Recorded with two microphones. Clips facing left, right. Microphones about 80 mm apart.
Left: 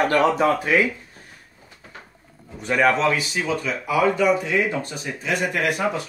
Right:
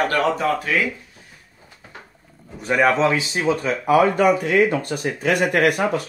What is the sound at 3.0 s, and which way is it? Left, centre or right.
Speech, right.